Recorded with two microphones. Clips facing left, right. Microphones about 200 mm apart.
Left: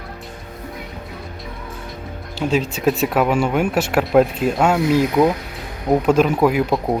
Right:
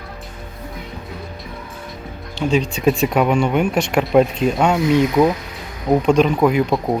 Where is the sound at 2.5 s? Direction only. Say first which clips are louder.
Right 2 dB; 5° left (ahead or behind).